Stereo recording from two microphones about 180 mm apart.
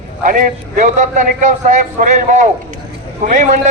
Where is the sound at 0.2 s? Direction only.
50° right (ahead or behind).